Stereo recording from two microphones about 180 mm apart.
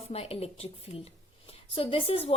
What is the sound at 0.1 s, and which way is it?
A woman's voice, 35° left (ahead or behind).